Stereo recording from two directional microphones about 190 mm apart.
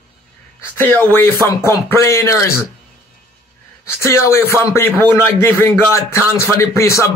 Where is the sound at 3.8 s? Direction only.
15° left (ahead or behind).